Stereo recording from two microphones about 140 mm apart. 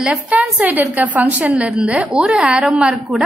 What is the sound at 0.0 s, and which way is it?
A woman's voice, 10° right (ahead or behind).